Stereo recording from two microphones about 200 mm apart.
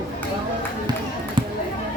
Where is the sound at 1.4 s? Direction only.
25° right (ahead or behind).